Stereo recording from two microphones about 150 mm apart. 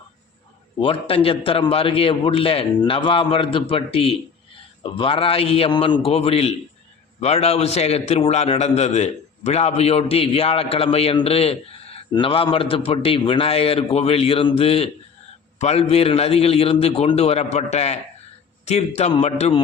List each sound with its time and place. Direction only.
0.8 s a man's voice: 35° left (ahead or behind)